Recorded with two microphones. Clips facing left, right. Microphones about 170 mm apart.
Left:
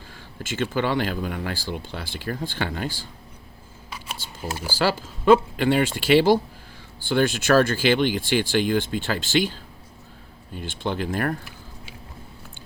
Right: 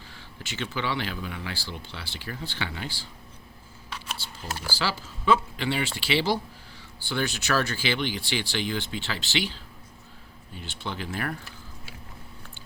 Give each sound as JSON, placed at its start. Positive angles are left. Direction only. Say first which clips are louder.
{"t": 0.1, "sound": "speech", "louder": "left 8 dB", "side_deg": 50}
{"t": 3.9, "sound": "a sound", "louder": "left 1 dB", "side_deg": 10}
{"t": 4.5, "sound": "speech", "louder": "left 4 dB", "side_deg": 15}
{"t": 4.8, "sound": "speech", "louder": "left 9 dB", "side_deg": 50}